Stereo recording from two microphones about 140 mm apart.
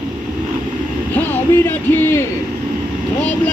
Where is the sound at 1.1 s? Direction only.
15° left (ahead or behind).